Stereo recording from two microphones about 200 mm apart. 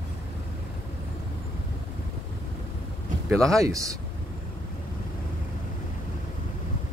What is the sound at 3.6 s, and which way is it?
Speech, 15° right (ahead or behind).